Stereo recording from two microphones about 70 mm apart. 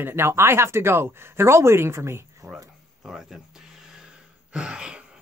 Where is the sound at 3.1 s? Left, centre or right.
Centre.